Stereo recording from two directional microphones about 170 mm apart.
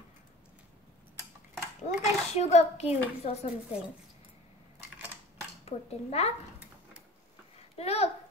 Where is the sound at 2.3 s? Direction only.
40° left (ahead or behind).